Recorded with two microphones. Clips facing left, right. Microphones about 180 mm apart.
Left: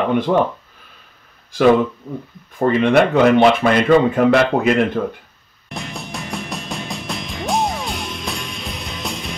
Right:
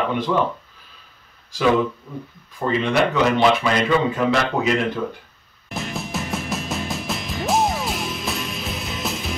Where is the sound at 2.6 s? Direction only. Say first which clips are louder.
Left 6 dB; 55° left (ahead or behind).